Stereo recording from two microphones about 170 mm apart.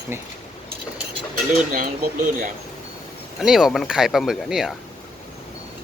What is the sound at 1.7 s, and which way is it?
Speech, 50° right (ahead or behind).